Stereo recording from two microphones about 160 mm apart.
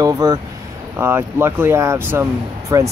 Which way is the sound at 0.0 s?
25° right (ahead or behind).